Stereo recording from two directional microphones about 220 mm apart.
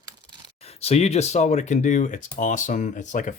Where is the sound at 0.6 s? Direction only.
30° left (ahead or behind).